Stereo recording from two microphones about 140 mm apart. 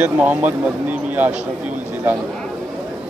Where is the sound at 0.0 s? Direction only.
10° right (ahead or behind).